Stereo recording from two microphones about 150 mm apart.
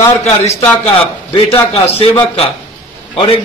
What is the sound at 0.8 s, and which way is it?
A man's voice, 40° left (ahead or behind).